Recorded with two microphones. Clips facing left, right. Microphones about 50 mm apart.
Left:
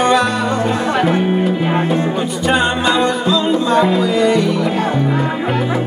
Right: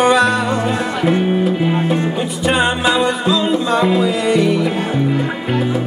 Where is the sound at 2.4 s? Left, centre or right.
Centre.